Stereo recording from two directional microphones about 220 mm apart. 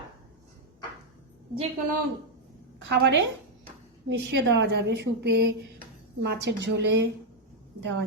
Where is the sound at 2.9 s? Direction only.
50° right (ahead or behind).